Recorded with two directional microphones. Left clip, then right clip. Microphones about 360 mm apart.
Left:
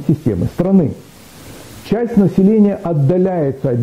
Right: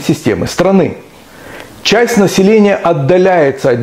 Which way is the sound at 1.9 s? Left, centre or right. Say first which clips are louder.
Right 8 dB; centre.